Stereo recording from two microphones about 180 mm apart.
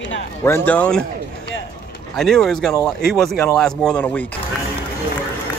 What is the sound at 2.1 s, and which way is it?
Speech, centre (ahead or behind).